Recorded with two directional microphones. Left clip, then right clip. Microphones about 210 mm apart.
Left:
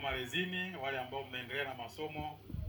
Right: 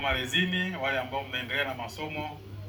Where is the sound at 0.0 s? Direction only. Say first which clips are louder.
Right 10 dB; 30° left (ahead or behind).